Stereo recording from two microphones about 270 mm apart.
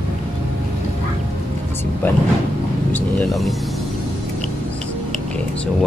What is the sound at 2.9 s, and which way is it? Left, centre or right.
Speech, centre.